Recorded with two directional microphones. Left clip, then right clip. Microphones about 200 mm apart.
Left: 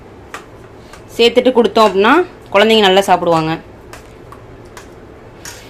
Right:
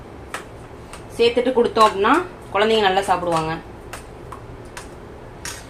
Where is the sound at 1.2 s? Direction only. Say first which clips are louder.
Left 6 dB; 55° left (ahead or behind).